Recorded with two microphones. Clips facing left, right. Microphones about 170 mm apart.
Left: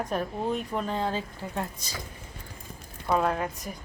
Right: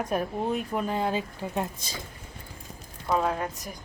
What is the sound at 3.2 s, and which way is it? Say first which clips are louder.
Speech: left 1 dB; centre (ahead or behind).